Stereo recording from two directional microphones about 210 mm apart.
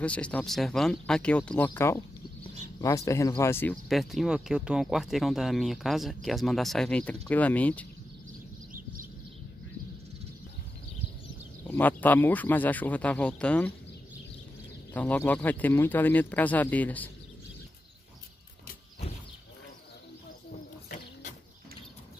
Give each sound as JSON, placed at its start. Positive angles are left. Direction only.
{"t": 0.0, "sound": "speech", "side_deg": 5}
{"t": 11.6, "sound": "speech", "side_deg": 10}
{"t": 15.0, "sound": "speech", "side_deg": 10}